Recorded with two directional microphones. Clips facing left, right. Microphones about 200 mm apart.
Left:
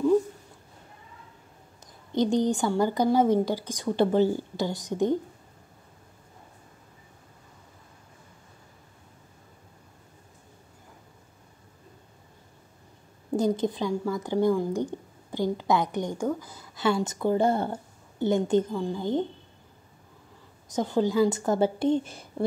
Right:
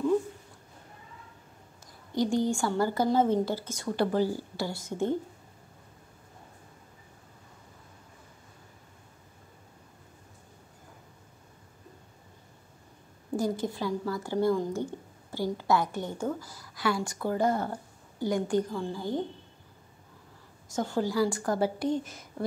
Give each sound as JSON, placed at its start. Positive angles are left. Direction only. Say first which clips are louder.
{"t": 2.1, "sound": "speech", "louder": "left 3 dB", "side_deg": 20}
{"t": 13.4, "sound": "speech", "louder": "left 4 dB", "side_deg": 20}
{"t": 20.6, "sound": "speech", "louder": "left 4 dB", "side_deg": 20}